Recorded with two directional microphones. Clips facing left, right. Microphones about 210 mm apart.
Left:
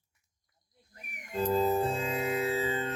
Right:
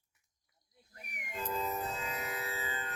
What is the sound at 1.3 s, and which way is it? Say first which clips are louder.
Music: left 10 dB; 35° left (ahead or behind).